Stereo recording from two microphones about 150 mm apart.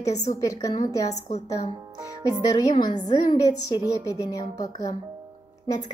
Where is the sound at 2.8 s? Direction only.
25° left (ahead or behind).